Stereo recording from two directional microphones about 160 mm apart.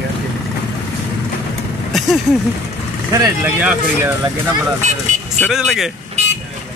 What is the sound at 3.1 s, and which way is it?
Speech, 15° right (ahead or behind).